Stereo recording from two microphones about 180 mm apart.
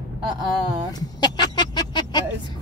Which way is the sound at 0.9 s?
25° left (ahead or behind).